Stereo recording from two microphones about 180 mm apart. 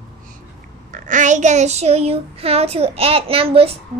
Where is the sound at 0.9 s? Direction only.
45° right (ahead or behind).